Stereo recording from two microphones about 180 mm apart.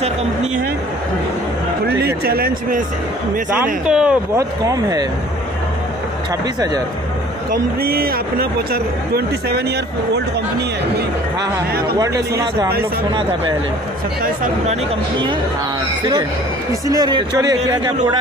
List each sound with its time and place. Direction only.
0.0 s speech: 35° right (ahead or behind)
2.2 s speech: 55° right (ahead or behind)
3.8 s speech: 5° right (ahead or behind)
4.4 s speech: 20° right (ahead or behind)
7.8 s speech: 55° right (ahead or behind)
16.0 s speech: 25° right (ahead or behind)